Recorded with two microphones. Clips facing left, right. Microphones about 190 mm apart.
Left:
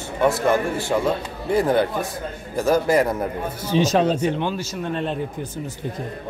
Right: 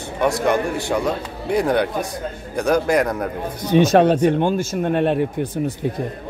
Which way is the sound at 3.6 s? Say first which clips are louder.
Right 5 dB; 60° right (ahead or behind).